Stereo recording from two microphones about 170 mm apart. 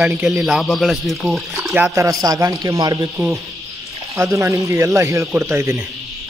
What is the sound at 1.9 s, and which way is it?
A man's voice, 20° right (ahead or behind).